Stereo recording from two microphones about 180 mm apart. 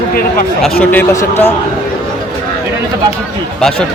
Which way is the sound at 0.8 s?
10° left (ahead or behind).